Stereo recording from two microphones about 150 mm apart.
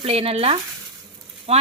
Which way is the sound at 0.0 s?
40° right (ahead or behind).